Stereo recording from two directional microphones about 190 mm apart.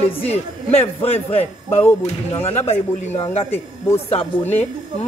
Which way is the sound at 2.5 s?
35° left (ahead or behind).